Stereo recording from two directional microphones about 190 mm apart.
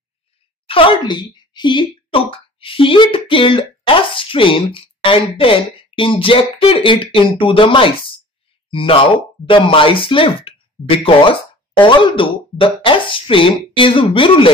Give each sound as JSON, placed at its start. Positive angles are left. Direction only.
{"t": 0.7, "sound": "speech", "side_deg": 25}